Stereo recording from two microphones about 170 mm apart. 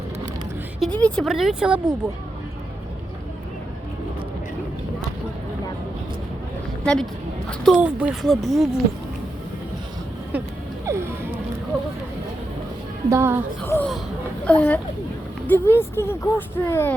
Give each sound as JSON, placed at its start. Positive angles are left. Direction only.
{"t": 0.8, "sound": "speech", "side_deg": 5}
{"t": 6.8, "sound": "a sound", "side_deg": 5}
{"t": 7.6, "sound": "speech", "side_deg": -5}
{"t": 10.3, "sound": "a sound", "side_deg": -10}
{"t": 10.8, "sound": "music", "side_deg": -15}
{"t": 13.1, "sound": "a woman's voice", "side_deg": -15}
{"t": 13.7, "sound": "speech", "side_deg": 10}